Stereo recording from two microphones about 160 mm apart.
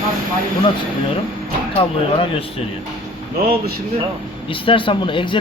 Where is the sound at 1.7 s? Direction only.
35° left (ahead or behind).